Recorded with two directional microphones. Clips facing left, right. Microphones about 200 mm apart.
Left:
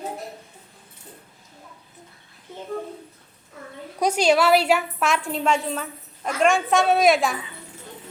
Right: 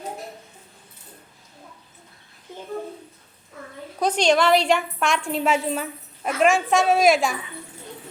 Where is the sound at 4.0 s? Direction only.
10° left (ahead or behind).